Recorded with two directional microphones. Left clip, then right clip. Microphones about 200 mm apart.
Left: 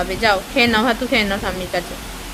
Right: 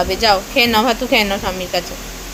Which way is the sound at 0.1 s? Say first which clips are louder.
Right 3 dB; 5° right (ahead or behind).